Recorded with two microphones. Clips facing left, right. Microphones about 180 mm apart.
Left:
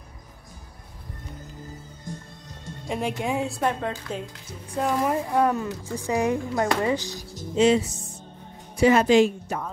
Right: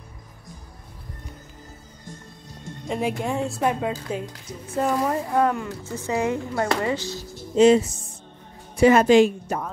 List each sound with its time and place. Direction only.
2.9 s a woman's voice: centre (ahead or behind)
5.0 s speech: 10° left (ahead or behind)
7.5 s a woman's voice: 45° right (ahead or behind)